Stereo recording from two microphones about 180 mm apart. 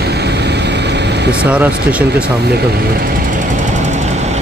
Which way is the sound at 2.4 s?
65° right (ahead or behind).